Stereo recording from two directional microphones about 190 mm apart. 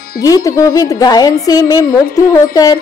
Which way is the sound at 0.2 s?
20° left (ahead or behind).